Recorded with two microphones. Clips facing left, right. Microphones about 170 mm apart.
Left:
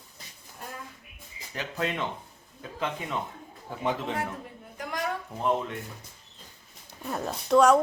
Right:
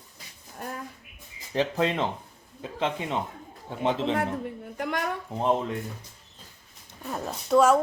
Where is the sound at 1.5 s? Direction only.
30° right (ahead or behind).